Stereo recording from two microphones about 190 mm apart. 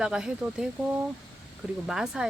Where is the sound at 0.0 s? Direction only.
5° right (ahead or behind).